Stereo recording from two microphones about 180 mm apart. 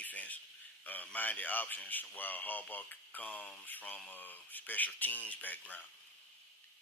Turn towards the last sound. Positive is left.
turn(degrees=10)  # may be behind; listen again after turning